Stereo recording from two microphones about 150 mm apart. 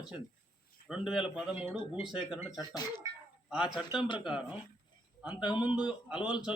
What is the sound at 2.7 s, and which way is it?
Speech, 25° left (ahead or behind).